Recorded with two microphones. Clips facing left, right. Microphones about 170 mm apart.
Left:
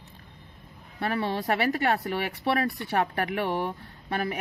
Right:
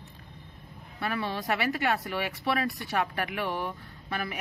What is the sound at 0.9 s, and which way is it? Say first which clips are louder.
Speech: left 4 dB; 35° left (ahead or behind).